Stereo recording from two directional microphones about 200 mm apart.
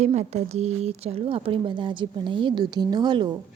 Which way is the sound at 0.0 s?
35° right (ahead or behind).